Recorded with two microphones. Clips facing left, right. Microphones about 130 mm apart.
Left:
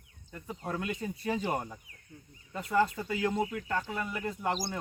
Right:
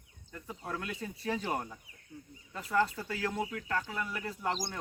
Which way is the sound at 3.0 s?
20° left (ahead or behind).